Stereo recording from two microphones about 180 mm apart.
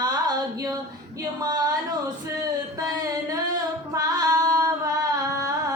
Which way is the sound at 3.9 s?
20° right (ahead or behind).